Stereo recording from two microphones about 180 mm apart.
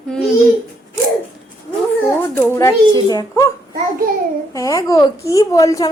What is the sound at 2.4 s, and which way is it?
A woman's voice, 15° left (ahead or behind).